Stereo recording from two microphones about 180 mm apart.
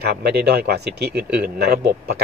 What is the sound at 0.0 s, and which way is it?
Speech, 65° right (ahead or behind).